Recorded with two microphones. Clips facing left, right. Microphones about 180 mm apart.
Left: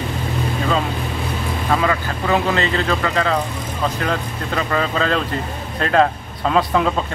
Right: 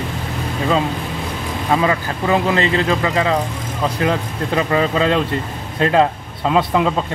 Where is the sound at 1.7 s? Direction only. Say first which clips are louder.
Right 2 dB; 20° right (ahead or behind).